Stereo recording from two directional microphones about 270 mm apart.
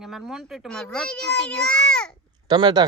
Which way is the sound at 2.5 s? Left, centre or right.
Centre.